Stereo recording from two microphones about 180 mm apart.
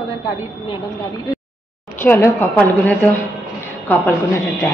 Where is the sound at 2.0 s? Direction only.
10° left (ahead or behind).